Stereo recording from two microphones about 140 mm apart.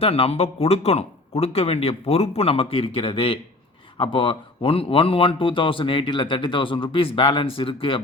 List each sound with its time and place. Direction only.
0.0 s a man's voice: 45° left (ahead or behind)